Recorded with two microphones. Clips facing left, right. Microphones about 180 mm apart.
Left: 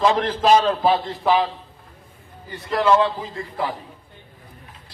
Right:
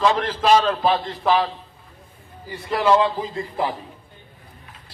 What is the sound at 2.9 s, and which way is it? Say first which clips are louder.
Speech: right 1 dB; 25° right (ahead or behind).